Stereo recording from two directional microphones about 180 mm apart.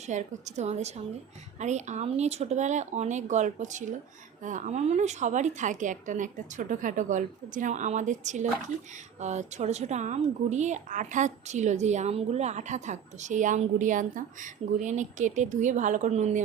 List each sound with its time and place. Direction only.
0.1 s a woman's voice: 40° right (ahead or behind)